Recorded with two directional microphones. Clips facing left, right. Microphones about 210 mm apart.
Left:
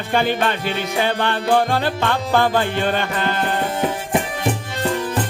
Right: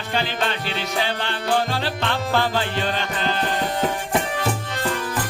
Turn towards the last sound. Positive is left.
turn(degrees=55)  # may be behind; listen again after turning